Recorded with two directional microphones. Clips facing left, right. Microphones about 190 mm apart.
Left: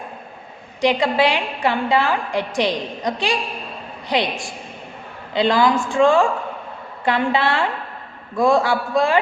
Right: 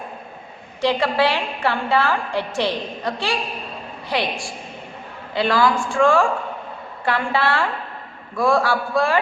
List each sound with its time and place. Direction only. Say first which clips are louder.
0.8 s a woman's voice: left 2 dB; 15° left (ahead or behind)